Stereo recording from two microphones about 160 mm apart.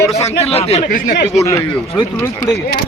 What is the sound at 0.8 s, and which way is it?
Speech, 60° left (ahead or behind).